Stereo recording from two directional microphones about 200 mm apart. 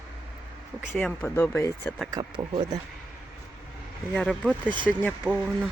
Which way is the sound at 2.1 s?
20° right (ahead or behind).